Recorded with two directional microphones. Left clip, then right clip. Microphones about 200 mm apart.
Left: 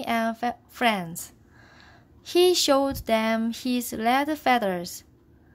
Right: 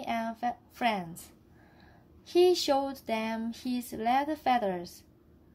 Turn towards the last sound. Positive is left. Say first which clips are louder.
# left 5 dB
turn(degrees=25)  # may be behind; listen again after turning